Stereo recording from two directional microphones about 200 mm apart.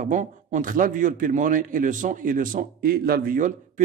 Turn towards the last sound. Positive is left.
turn(degrees=-40)  # may be behind; listen again after turning